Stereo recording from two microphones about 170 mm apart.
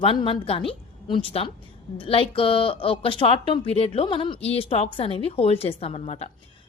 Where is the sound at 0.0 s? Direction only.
30° left (ahead or behind).